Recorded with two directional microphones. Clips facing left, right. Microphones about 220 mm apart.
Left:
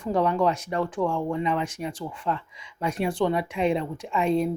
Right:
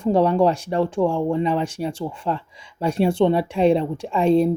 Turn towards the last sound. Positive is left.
turn(degrees=-30)  # may be behind; listen again after turning